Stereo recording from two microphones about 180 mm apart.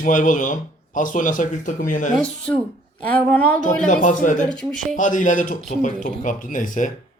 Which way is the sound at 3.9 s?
45° left (ahead or behind).